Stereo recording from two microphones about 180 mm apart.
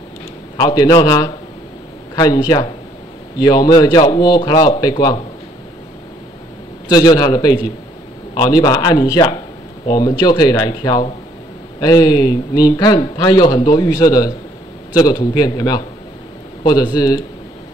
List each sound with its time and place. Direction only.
0.6 s speech: 25° left (ahead or behind)
6.9 s speech: 20° left (ahead or behind)